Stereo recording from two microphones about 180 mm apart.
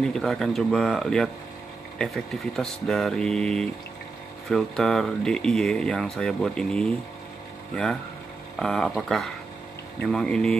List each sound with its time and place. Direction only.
0.0 s speech: centre (ahead or behind)